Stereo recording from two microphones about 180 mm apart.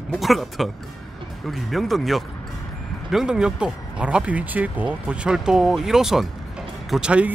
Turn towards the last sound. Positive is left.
turn(degrees=-5)  # may be behind; listen again after turning